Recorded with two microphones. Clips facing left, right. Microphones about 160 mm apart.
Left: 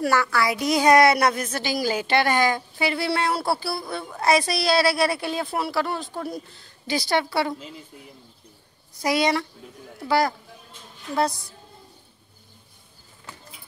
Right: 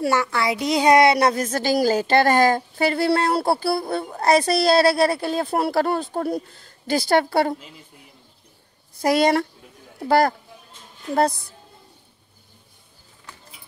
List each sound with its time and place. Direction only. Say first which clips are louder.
0.0 s a woman's voice: right 1 dB; 20° right (ahead or behind)
1.3 s a woman's voice: right 6 dB; 40° right (ahead or behind)
9.0 s a woman's voice: right 4 dB; 50° right (ahead or behind)